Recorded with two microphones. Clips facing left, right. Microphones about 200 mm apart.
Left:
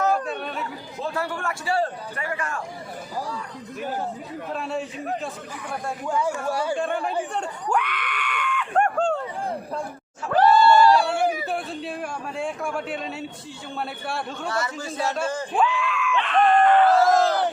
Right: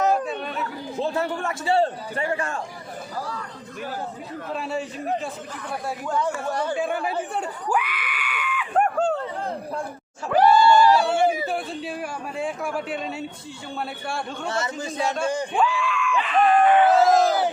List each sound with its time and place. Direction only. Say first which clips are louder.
0.1 s chatter: right 1 dB; centre (ahead or behind)
0.9 s a man's voice: right 3 dB; 25° right (ahead or behind)
4.5 s speech: right 1 dB; centre (ahead or behind)
6.7 s speech: even; 5° right (ahead or behind)
7.3 s screaming: even; 5° right (ahead or behind)
10.3 s screaming: even; 10° right (ahead or behind)
11.2 s a sound: right 3 dB; 25° right (ahead or behind)
11.4 s speech: right 1 dB; centre (ahead or behind)
14.4 s a man's voice: right 1 dB; 25° right (ahead or behind)
15.5 s screaming: even; 5° left (ahead or behind)